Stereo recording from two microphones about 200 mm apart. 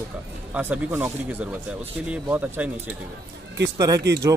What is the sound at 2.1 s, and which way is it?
Speech, 10° right (ahead or behind).